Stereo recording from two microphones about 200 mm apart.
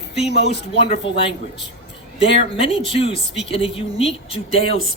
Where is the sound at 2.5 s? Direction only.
25° left (ahead or behind).